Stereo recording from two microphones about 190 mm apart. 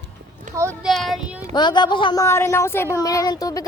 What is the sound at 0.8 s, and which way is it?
Child singing, centre (ahead or behind).